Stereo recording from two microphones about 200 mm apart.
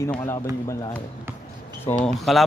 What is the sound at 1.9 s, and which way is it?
Speech, centre (ahead or behind).